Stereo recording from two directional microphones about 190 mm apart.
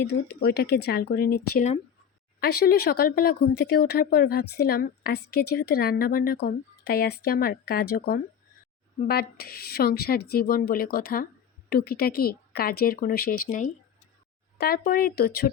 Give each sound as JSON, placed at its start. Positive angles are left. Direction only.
{"t": 0.0, "sound": "speech", "side_deg": 60}